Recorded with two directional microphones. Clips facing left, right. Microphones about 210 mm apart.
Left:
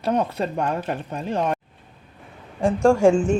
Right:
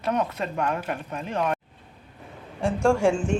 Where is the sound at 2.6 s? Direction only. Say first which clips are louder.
Left 4 dB; 40° left (ahead or behind).